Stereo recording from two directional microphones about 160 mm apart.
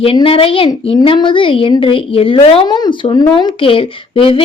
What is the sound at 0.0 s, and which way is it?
Speech, 35° left (ahead or behind).